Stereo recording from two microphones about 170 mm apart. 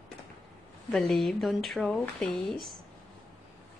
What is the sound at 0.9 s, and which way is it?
Speech, centre (ahead or behind).